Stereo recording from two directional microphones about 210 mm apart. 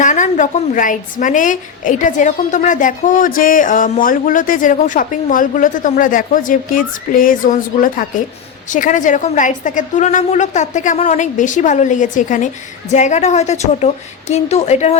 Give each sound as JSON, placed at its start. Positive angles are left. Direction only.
{"t": 0.0, "sound": "a woman's voice", "side_deg": 35}